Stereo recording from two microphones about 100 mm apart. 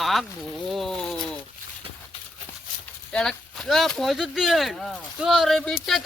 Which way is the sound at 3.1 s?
5° left (ahead or behind).